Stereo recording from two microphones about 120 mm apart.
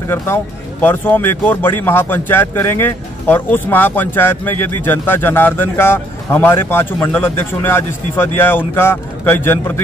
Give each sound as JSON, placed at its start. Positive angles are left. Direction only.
{"t": 0.1, "sound": "speech", "side_deg": 15}